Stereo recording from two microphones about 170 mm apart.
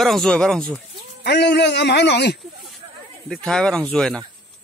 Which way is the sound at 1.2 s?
80° left.